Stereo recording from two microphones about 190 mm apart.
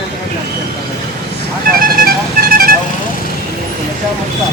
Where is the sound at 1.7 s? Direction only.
50° right (ahead or behind).